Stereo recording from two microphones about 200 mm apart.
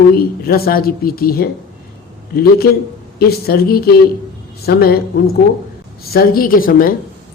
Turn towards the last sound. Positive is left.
turn(degrees=45)  # may be behind; listen again after turning